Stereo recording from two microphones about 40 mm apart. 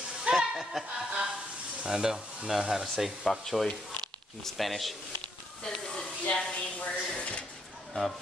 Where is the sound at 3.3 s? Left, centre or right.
Centre.